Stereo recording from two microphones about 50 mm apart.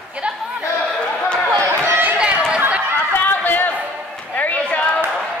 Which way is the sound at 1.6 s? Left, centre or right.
Right.